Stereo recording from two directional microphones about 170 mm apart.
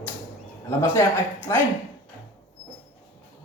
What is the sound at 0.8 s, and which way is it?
Speech, 15° left (ahead or behind).